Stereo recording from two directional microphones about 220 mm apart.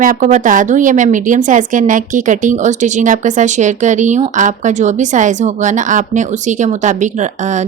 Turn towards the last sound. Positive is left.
turn(degrees=-35)  # may be behind; listen again after turning